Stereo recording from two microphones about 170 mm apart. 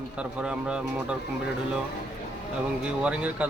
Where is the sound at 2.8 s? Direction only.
5° right (ahead or behind).